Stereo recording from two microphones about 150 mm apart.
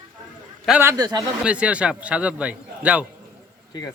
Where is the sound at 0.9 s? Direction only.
25° right (ahead or behind).